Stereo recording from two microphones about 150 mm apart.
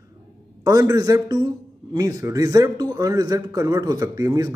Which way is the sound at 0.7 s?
20° right (ahead or behind).